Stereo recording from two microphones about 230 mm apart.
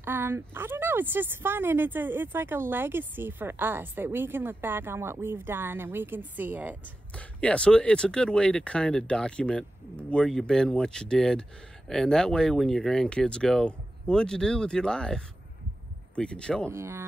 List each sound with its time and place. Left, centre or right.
0.0 s a woman's voice: centre
7.2 s speech: centre
16.7 s a woman's voice: centre